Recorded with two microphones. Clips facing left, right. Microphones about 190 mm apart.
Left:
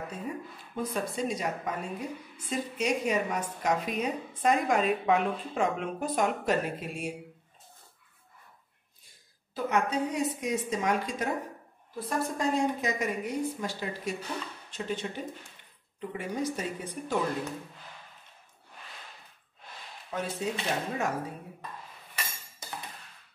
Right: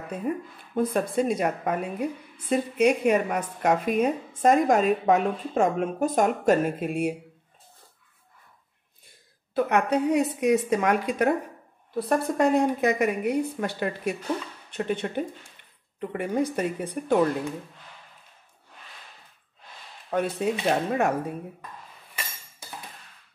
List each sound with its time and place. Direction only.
0.3 s a woman's voice: 55° right (ahead or behind)
9.5 s a woman's voice: 65° right (ahead or behind)
20.1 s a woman's voice: 60° right (ahead or behind)